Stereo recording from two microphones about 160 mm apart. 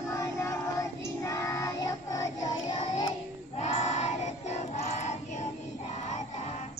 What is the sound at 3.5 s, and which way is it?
Child singing, 45° left (ahead or behind).